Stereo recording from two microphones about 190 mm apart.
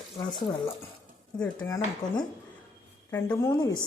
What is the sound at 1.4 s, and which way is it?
Speech, 5° left (ahead or behind).